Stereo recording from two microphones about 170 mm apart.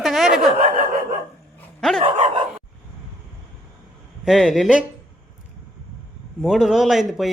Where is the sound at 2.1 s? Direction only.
45° right (ahead or behind).